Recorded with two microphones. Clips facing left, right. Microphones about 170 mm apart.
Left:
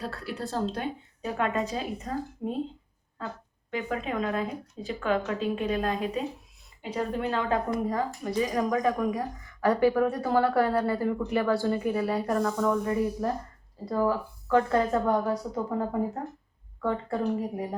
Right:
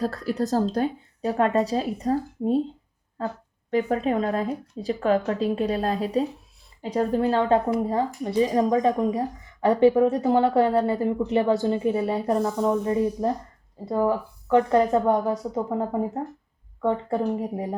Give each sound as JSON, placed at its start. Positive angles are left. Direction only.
{"t": 0.0, "sound": "a woman's voice", "side_deg": -40}
{"t": 3.7, "sound": "a woman's voice", "side_deg": -35}